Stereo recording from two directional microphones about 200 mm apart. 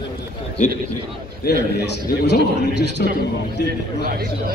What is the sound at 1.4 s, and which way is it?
A man's voice, 50° left (ahead or behind).